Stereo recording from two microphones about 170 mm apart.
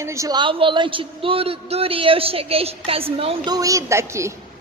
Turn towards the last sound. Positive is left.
turn(degrees=-15)  # may be behind; listen again after turning